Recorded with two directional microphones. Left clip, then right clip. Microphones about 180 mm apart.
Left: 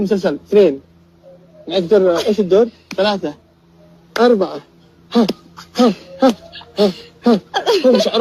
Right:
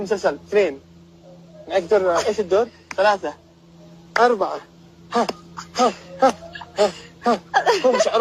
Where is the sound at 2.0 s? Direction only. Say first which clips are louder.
Left 5 dB; 25° left (ahead or behind).